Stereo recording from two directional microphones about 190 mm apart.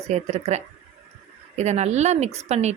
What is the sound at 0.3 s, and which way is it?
A woman's voice, 35° right (ahead or behind).